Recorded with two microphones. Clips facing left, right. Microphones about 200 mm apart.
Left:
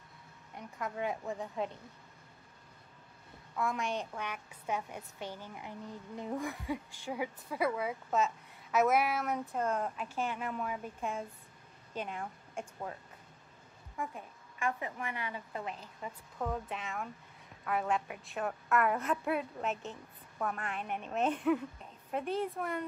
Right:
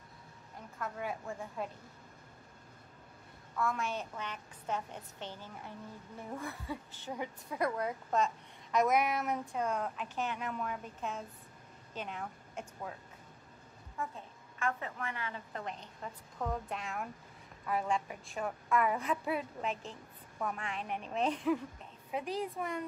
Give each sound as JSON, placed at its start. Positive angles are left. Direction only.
{"t": 0.7, "sound": "a woman's voice", "side_deg": 15}
{"t": 3.5, "sound": "a woman's voice", "side_deg": 15}
{"t": 13.9, "sound": "a woman's voice", "side_deg": 15}